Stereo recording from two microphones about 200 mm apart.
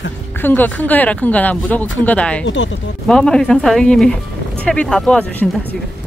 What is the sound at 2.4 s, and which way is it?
Speech, 70° left (ahead or behind).